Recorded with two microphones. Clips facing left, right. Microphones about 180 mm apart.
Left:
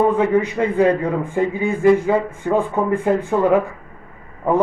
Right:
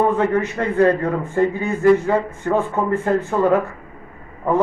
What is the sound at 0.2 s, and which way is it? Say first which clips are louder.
A man's voice: left 2 dB; 10° left (ahead or behind).